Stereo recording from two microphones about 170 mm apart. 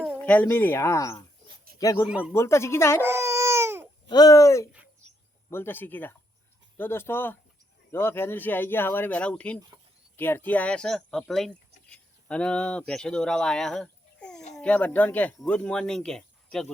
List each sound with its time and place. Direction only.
0.2 s speech: 10° left (ahead or behind)
2.0 s a man's voice: 5° right (ahead or behind)
2.3 s speech: 15° left (ahead or behind)
3.0 s babbling: 15° right (ahead or behind)
4.1 s speech: 20° left (ahead or behind); by 16.7 s 5° left (ahead or behind)